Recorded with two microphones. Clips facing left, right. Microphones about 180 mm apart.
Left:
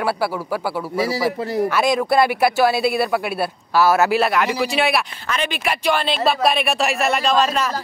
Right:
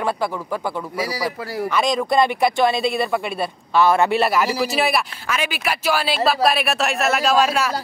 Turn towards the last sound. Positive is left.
turn(degrees=-10)  # may be behind; listen again after turning